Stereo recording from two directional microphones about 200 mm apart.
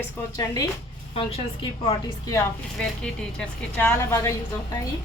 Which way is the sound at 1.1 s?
30° left (ahead or behind).